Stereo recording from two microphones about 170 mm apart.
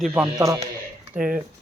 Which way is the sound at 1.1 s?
5° right (ahead or behind).